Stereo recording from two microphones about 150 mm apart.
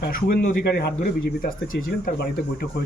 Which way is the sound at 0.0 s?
80° left.